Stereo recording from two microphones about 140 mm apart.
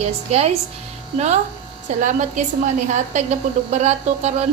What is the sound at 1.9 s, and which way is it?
Speech, 60° right (ahead or behind).